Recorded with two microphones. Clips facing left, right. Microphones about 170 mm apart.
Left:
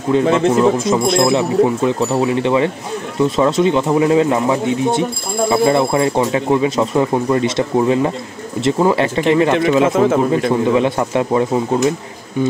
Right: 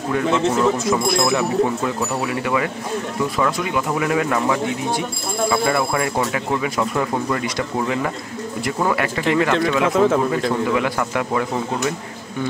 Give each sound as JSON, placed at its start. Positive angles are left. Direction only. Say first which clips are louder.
{"t": 0.1, "sound": "speech", "louder": "left 5 dB", "side_deg": 25}
{"t": 9.9, "sound": "speech", "louder": "left 3 dB", "side_deg": 5}
{"t": 10.5, "sound": "speech", "louder": "left 6 dB", "side_deg": 25}